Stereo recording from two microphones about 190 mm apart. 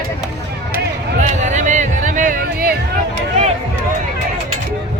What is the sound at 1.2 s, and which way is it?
Music, 40° right (ahead or behind).